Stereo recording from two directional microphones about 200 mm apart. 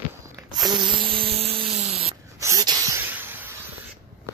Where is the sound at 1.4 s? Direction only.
30° right (ahead or behind).